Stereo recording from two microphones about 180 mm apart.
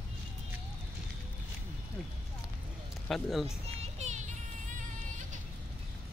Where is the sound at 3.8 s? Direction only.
40° right (ahead or behind).